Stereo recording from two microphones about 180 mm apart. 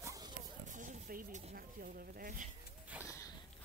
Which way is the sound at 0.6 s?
45° right (ahead or behind).